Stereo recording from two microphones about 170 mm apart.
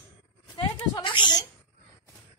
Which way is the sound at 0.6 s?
30° left (ahead or behind).